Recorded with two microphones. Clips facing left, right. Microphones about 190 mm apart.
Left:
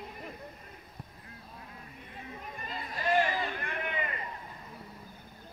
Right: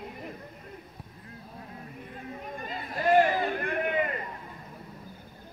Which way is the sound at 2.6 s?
50° right (ahead or behind).